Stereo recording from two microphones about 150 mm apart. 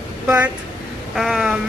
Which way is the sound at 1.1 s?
5° right (ahead or behind).